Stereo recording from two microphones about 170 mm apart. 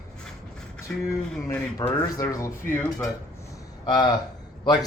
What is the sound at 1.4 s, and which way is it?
A man's voice, 20° left (ahead or behind).